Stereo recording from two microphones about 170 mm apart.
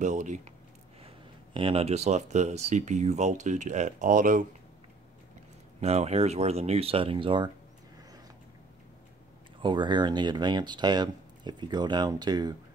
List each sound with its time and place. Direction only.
0.0 s speech: 45° right (ahead or behind)
1.0 s speech: 30° right (ahead or behind); by 4.5 s 50° right (ahead or behind)
5.8 s speech: 40° right (ahead or behind)
9.6 s speech: 25° right (ahead or behind)